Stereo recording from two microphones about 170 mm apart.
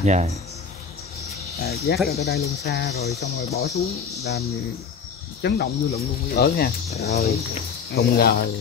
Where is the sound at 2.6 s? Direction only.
75° left (ahead or behind).